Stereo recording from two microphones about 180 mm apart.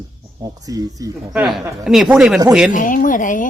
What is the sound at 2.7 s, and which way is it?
Speech, 45° left (ahead or behind).